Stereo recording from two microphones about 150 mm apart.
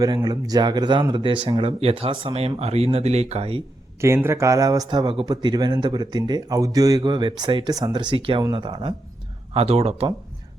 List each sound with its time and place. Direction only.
0.0 s speech: 25° right (ahead or behind); by 3.6 s 45° right (ahead or behind)
4.0 s speech: 20° right (ahead or behind); by 10.1 s 40° right (ahead or behind)